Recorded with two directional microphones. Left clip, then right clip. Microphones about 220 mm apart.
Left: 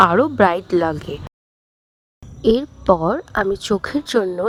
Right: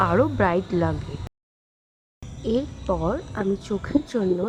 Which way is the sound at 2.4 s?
40° left (ahead or behind).